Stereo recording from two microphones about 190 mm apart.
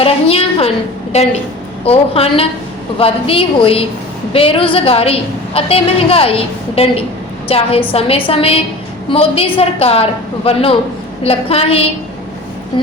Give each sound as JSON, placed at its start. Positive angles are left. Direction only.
{"t": 0.0, "sound": "a woman's voice", "side_deg": 30}